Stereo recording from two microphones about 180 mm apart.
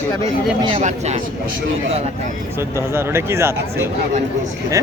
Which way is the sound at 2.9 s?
15° right (ahead or behind).